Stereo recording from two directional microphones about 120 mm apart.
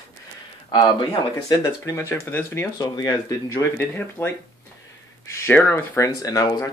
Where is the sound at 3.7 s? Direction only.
15° left (ahead or behind).